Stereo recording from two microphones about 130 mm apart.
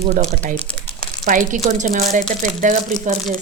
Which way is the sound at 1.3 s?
75° right (ahead or behind).